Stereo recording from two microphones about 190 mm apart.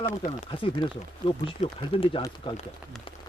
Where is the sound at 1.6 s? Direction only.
40° left (ahead or behind).